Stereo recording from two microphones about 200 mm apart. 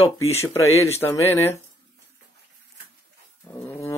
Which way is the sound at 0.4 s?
15° left (ahead or behind).